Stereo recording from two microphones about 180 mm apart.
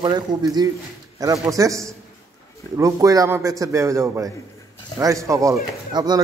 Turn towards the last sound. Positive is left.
turn(degrees=-25)  # may be behind; listen again after turning